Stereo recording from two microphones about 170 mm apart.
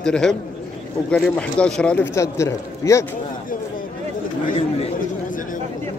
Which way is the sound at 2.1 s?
15° left (ahead or behind).